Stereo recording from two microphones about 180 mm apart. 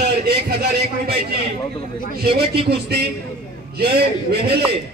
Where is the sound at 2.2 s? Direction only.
60° right (ahead or behind).